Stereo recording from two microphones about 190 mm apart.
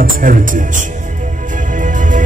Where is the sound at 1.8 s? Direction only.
45° right (ahead or behind).